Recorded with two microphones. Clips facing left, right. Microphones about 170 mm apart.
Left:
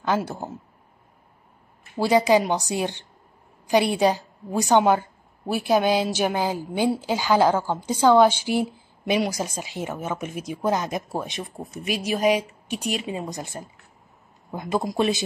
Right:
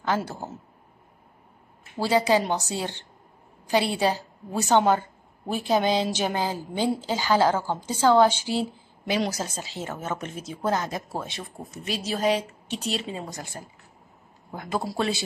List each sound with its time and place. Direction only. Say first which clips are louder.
0.0 s a woman's voice: left 2 dB; 15° left (ahead or behind)
2.0 s a woman's voice: left 3 dB; 15° left (ahead or behind)